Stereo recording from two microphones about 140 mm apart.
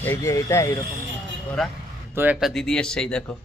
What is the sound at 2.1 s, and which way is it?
Speech, 15° right (ahead or behind).